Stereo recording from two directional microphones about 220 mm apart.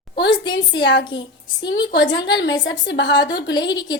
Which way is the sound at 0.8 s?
55° left (ahead or behind).